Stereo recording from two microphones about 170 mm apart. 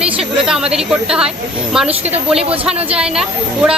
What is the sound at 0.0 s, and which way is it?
A woman's voice, 5° right (ahead or behind).